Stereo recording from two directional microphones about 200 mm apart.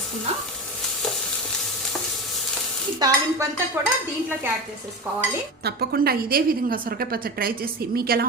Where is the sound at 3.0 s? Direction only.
20° right (ahead or behind).